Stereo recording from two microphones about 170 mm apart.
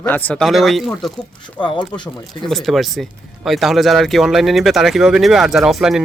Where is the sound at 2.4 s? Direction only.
Centre (ahead or behind).